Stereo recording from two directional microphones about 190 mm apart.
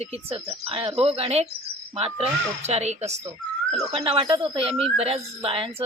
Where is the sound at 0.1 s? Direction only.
30° right (ahead or behind).